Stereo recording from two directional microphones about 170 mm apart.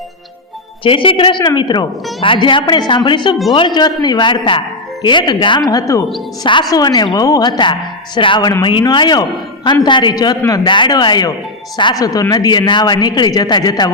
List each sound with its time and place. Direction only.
0.9 s a woman's voice: 30° left (ahead or behind)